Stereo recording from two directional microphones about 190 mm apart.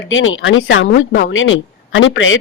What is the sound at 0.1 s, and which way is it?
A woman's voice, 90° left.